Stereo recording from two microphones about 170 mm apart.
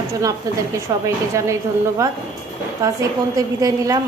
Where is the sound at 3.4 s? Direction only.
20° right (ahead or behind).